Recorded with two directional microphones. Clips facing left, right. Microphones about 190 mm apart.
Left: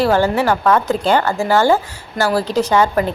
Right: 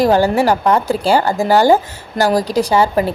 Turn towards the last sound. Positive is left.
turn(degrees=-10)  # may be behind; listen again after turning